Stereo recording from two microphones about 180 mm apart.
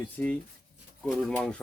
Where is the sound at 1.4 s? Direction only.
5° left (ahead or behind).